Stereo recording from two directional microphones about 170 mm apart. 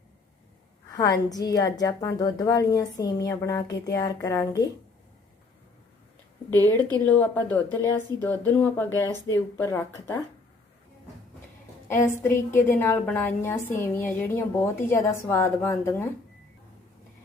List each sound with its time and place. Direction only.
0.9 s a woman's voice: 20° left (ahead or behind)
6.6 s a woman's voice: 20° right (ahead or behind)
7.0 s a woman's voice: 10° left (ahead or behind)
11.9 s a woman's voice: 15° left (ahead or behind)